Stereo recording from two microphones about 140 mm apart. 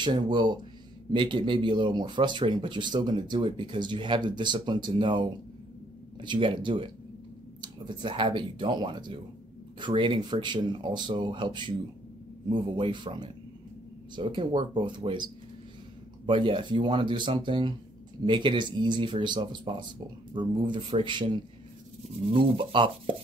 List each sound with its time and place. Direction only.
0.0 s speech: 35° right (ahead or behind)
16.3 s speech: 35° right (ahead or behind)